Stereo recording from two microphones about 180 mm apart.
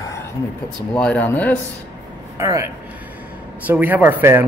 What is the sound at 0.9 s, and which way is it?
Speech, 5° left (ahead or behind).